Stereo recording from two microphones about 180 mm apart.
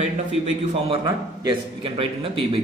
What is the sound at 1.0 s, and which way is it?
A man's voice, 25° right (ahead or behind).